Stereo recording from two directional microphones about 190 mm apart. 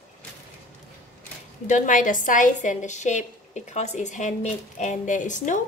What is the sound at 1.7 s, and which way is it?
A woman's voice, 45° left (ahead or behind).